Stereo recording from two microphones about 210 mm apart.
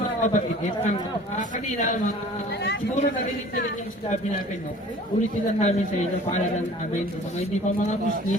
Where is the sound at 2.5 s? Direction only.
55° left (ahead or behind).